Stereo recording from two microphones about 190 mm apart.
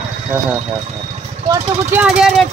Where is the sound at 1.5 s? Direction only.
10° right (ahead or behind).